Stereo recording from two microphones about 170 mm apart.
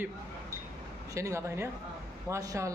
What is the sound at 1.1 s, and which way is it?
A man's voice, 15° right (ahead or behind).